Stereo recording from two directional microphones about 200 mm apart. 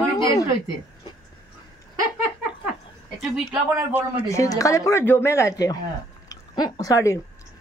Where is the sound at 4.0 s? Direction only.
15° left (ahead or behind).